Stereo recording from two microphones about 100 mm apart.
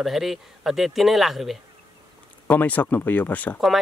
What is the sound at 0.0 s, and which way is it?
Speech, centre (ahead or behind).